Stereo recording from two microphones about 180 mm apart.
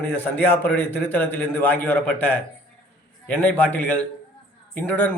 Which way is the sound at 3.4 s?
10° left (ahead or behind).